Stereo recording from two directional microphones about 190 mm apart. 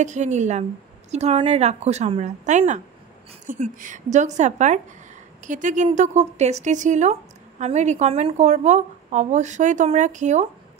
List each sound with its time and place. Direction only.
0.0 s speech: 40° right (ahead or behind)